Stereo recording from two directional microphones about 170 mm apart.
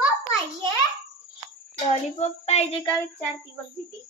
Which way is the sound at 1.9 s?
40° left (ahead or behind).